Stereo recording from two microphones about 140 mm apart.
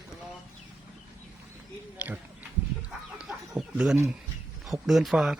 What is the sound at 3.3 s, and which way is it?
Chicken, 5° right (ahead or behind).